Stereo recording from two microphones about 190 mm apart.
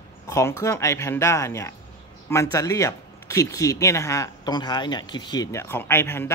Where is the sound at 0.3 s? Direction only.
15° left (ahead or behind).